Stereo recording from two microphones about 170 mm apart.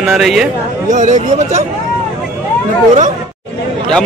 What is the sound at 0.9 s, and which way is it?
Speech, 45° right (ahead or behind).